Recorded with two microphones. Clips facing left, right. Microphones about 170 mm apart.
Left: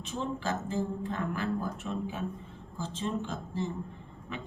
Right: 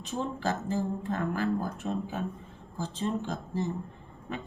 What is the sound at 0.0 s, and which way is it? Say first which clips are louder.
Speech: right 2 dB; 40° right (ahead or behind).